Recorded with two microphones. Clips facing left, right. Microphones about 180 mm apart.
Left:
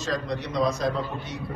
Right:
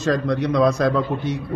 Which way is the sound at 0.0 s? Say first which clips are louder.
Right 9 dB; 55° right (ahead or behind).